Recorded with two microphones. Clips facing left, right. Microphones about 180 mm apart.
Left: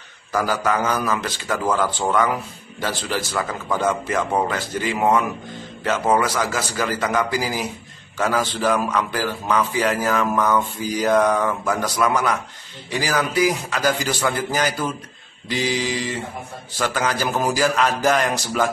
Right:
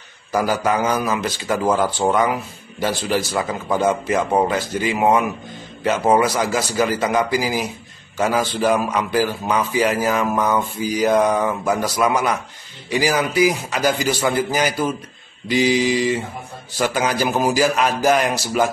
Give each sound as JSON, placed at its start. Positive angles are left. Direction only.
{"t": 0.3, "sound": "a man's voice", "side_deg": -15}
{"t": 1.6, "sound": "a man's voice", "side_deg": -25}